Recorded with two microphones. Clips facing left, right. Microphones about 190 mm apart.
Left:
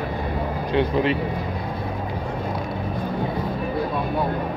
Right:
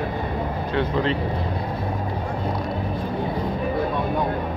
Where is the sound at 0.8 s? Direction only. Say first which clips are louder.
Left 2 dB; 15° left (ahead or behind).